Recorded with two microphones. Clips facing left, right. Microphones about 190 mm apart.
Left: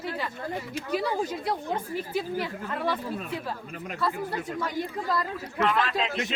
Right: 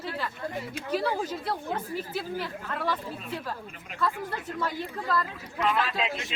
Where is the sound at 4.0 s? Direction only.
10° left (ahead or behind).